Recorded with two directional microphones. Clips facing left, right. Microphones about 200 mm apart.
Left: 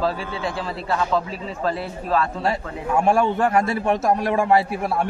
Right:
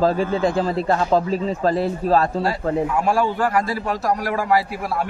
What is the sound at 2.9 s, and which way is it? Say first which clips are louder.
A man's voice: left 1 dB; 25° left (ahead or behind).